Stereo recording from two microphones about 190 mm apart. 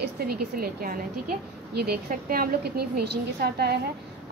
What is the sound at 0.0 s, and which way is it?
A woman's voice, 55° right (ahead or behind).